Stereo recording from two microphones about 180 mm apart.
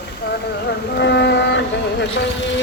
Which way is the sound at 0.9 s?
70° left (ahead or behind).